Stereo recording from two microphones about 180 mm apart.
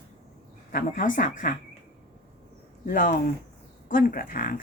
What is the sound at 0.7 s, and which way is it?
Speech, 50° left (ahead or behind).